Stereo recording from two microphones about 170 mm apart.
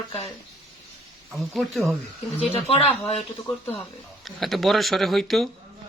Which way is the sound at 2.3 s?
35° left (ahead or behind).